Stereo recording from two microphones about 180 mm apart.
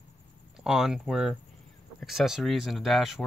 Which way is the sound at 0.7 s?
5° right (ahead or behind).